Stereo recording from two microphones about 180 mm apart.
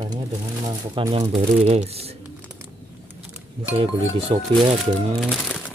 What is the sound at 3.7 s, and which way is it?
Speech, 30° right (ahead or behind).